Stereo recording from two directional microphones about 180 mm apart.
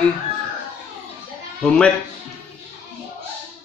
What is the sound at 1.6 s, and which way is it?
Speech, 5° left (ahead or behind).